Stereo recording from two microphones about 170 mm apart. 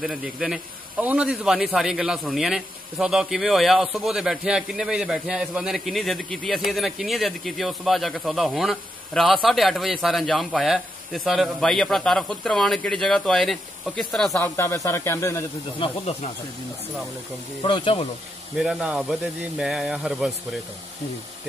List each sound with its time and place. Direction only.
0.0 s a man's voice: centre (ahead or behind)
14.6 s speech: 15° left (ahead or behind)
15.8 s speech: 40° left (ahead or behind)
17.6 s speech: 30° left (ahead or behind)
18.6 s a man's voice: 5° right (ahead or behind)